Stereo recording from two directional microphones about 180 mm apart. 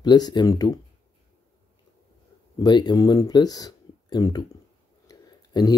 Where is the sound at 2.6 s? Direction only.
25° left (ahead or behind).